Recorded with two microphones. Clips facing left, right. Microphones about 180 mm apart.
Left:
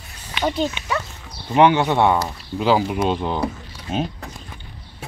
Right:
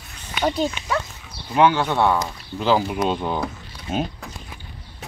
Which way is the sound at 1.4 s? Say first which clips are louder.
Left 3 dB; 20° left (ahead or behind).